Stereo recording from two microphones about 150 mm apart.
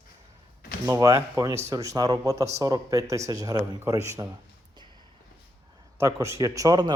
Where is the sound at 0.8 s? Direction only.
20° right (ahead or behind).